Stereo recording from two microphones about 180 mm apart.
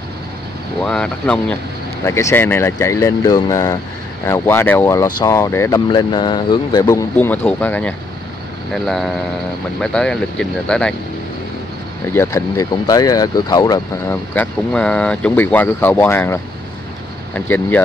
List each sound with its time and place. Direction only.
0.8 s speech: 5° left (ahead or behind)
12.1 s speech: 15° left (ahead or behind)